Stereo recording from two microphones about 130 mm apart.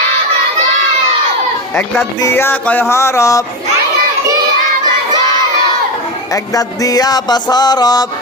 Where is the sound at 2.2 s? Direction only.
20° left (ahead or behind).